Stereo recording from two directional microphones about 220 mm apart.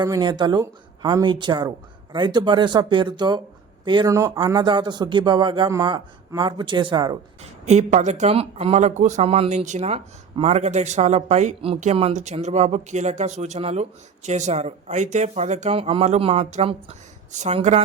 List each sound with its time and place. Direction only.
0.0 s speech: 20° right (ahead or behind)
7.6 s speech: 30° right (ahead or behind)